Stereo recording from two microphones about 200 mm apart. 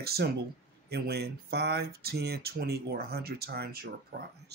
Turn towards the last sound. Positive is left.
turn(degrees=-50)  # may be behind; listen again after turning